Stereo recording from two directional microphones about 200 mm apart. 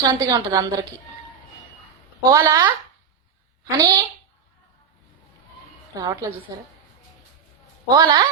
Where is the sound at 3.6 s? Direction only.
20° right (ahead or behind).